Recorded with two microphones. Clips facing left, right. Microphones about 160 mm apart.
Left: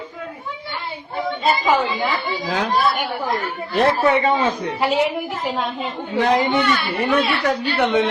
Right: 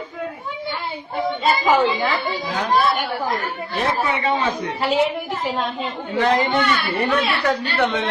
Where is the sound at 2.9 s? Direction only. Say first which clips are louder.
Even; 10° left (ahead or behind).